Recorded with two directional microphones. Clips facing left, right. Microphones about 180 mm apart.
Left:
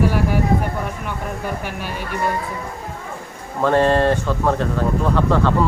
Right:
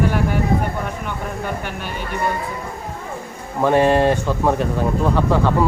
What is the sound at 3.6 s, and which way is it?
Speech, 15° right (ahead or behind).